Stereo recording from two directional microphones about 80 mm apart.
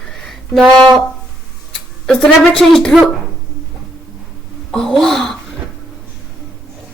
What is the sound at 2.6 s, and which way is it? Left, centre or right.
Speech, centre.